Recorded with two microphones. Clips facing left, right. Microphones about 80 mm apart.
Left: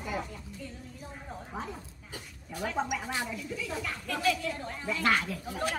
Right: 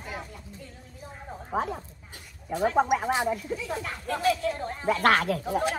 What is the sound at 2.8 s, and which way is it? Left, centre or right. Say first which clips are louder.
Speech: right 8 dB; right.